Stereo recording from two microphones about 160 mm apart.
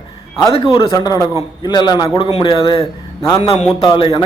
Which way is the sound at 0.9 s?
20° left (ahead or behind).